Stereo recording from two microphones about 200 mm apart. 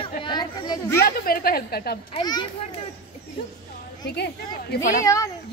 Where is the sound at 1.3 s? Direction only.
50° left (ahead or behind).